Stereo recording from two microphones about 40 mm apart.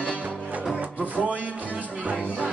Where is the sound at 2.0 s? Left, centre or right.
Right.